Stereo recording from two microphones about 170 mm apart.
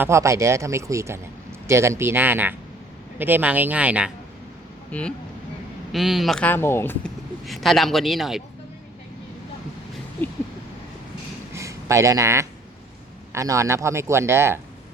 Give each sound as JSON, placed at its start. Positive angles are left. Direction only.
{"t": 0.0, "sound": "speech", "side_deg": -15}
{"t": 4.9, "sound": "speech", "side_deg": 5}
{"t": 7.4, "sound": "speech", "side_deg": 0}
{"t": 11.5, "sound": "a sound", "side_deg": -15}
{"t": 13.3, "sound": "speech", "side_deg": -20}